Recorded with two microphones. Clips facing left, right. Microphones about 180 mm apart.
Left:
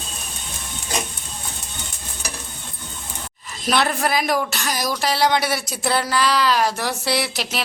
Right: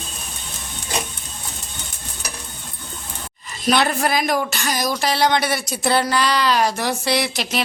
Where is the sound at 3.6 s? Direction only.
Centre (ahead or behind).